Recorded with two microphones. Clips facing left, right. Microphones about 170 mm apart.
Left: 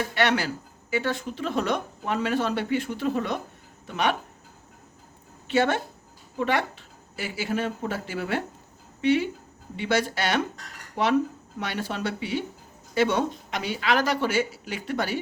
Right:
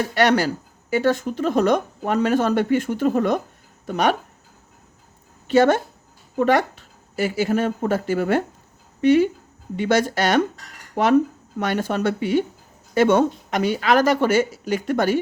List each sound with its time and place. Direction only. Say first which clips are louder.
0.1 s speech: right 6 dB; 40° right (ahead or behind)
5.5 s speech: right 7 dB; 40° right (ahead or behind)